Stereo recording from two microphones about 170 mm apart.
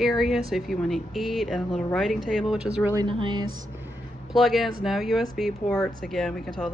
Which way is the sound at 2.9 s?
25° right (ahead or behind).